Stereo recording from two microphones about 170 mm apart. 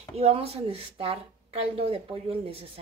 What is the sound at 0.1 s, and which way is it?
Speech, 35° right (ahead or behind).